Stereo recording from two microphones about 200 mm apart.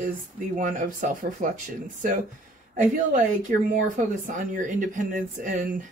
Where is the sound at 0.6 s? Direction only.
40° right (ahead or behind).